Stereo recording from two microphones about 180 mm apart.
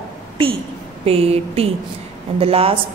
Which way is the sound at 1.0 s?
35° right (ahead or behind).